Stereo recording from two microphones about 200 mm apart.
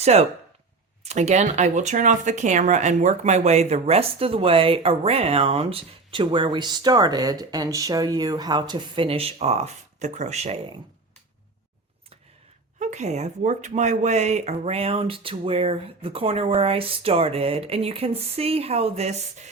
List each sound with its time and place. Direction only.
0.0 s speech: 35° right (ahead or behind)
12.8 s speech: 35° right (ahead or behind)